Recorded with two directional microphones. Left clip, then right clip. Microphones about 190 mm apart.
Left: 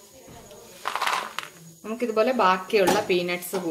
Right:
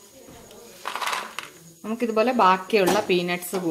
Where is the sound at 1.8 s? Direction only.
45° right (ahead or behind).